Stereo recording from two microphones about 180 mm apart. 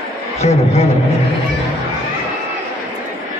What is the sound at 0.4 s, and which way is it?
Speech, 35° left (ahead or behind).